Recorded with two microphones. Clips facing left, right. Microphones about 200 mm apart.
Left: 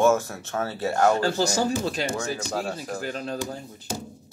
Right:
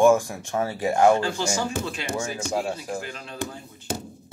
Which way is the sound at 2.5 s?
10° right (ahead or behind).